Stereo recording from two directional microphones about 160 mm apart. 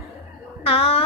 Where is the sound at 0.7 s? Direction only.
35° left (ahead or behind).